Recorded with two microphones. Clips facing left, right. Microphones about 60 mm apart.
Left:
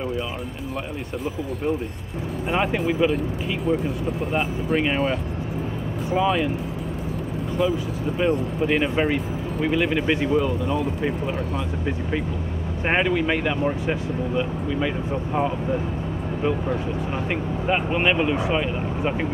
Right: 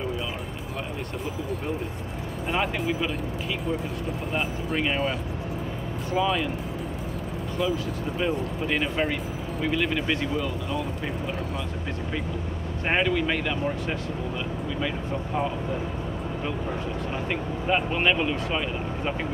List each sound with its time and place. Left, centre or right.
2.5 s speech: centre
4.3 s speech: centre
6.1 s speech: centre
7.5 s speech: centre
12.8 s speech: centre
17.3 s speech: centre